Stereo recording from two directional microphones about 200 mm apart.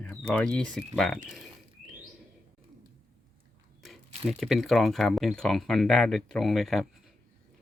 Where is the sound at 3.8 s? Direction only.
Centre (ahead or behind).